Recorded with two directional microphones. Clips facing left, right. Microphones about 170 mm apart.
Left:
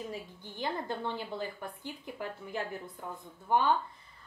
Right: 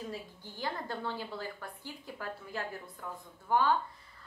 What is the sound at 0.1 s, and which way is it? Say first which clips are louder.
A woman's voice: left 1 dB; 20° left (ahead or behind).